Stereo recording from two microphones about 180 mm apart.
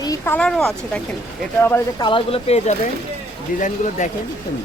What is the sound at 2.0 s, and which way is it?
A woman's voice, 30° left (ahead or behind).